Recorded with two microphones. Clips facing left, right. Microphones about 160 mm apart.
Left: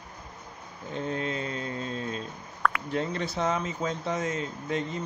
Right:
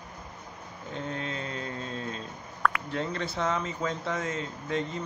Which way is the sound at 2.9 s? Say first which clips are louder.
Left 2 dB; 15° left (ahead or behind).